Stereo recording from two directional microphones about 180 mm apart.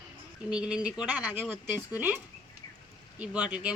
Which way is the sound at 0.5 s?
5° right (ahead or behind).